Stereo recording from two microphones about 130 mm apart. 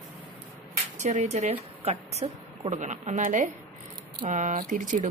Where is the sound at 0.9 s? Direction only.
70° right (ahead or behind).